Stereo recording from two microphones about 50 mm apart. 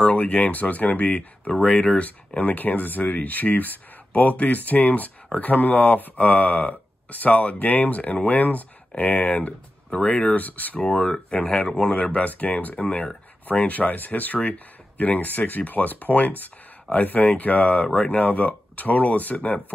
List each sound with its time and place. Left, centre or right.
0.0 s speech: left
10.8 s speech: centre
11.9 s speech: left